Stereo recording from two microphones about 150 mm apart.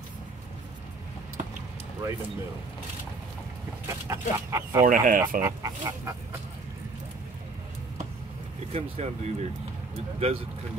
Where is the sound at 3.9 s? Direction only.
20° right (ahead or behind).